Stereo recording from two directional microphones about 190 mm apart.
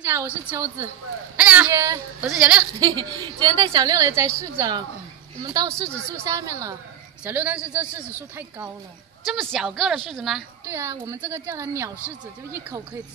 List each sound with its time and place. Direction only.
0.0 s a woman's voice: 10° right (ahead or behind)
2.2 s a woman's voice: 5° right (ahead or behind)
2.8 s a woman's voice: 20° right (ahead or behind)
9.2 s a woman's voice: centre (ahead or behind)
10.6 s a woman's voice: 15° right (ahead or behind)